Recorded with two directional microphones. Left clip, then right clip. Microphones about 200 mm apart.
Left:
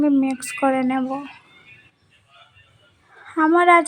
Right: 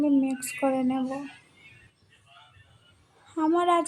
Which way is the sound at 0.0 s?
15° left (ahead or behind).